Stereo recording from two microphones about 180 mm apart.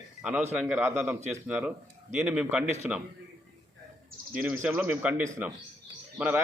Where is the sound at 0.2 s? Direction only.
5° right (ahead or behind).